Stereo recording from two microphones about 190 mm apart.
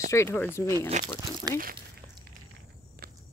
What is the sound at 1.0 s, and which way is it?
Speech, 40° right (ahead or behind).